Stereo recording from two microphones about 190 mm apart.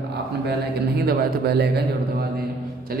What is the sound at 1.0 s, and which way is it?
Speech, 55° right (ahead or behind).